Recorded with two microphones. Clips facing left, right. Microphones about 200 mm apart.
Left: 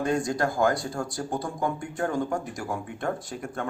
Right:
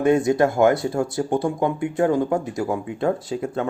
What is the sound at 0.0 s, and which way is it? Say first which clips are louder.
Speech: right 8 dB; 25° right (ahead or behind).